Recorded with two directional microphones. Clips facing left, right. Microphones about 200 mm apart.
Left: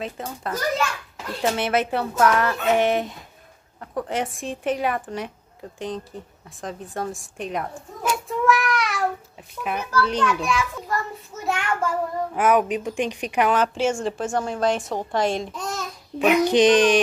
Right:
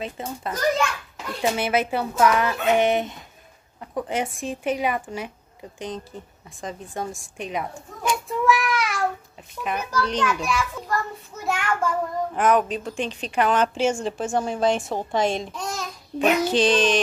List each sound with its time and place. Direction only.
0.0 s a child's voice: centre (ahead or behind)
14.3 s a child's voice: 15° right (ahead or behind)
15.5 s speech: centre (ahead or behind)
16.3 s a woman's voice: 15° left (ahead or behind)